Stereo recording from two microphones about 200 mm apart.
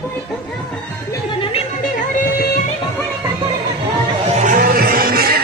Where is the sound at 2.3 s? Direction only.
50° left (ahead or behind).